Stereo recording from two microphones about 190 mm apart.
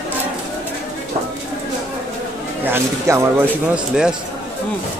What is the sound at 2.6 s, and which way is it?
A man's voice, 15° right (ahead or behind).